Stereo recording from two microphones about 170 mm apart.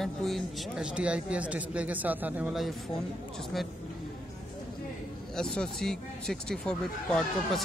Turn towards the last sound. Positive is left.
turn(degrees=5)  # may be behind; listen again after turning